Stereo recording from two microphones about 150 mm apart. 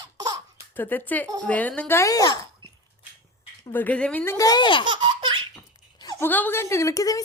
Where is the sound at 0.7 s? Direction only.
15° left (ahead or behind).